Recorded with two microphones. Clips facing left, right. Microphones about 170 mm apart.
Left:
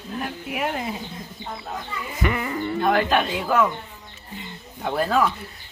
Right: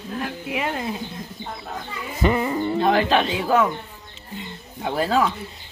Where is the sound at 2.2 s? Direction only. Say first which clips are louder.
Right 5 dB; 25° right (ahead or behind).